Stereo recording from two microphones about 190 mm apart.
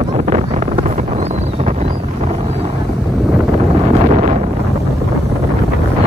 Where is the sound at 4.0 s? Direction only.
40° right (ahead or behind).